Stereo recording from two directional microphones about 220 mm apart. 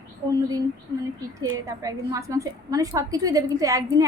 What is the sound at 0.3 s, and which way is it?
A woman's voice, 15° right (ahead or behind).